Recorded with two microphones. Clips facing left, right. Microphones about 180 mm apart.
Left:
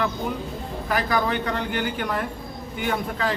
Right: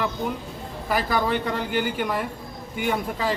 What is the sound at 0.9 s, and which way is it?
Speech, 10° right (ahead or behind).